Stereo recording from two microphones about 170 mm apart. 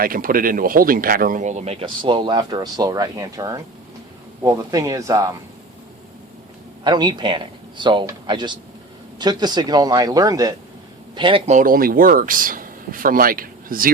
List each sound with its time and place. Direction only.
0.0 s speech: 55° right (ahead or behind); by 5.2 s 20° right (ahead or behind)
6.8 s speech: 25° right (ahead or behind)
11.5 s speech: 55° right (ahead or behind)